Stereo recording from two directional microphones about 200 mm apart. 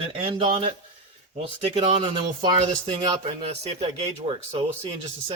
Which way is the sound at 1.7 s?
30° right (ahead or behind).